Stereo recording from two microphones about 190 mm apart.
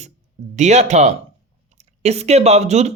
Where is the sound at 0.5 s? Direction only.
35° right (ahead or behind).